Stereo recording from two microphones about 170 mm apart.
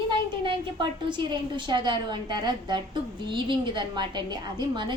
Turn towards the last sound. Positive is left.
turn(degrees=-30)  # may be behind; listen again after turning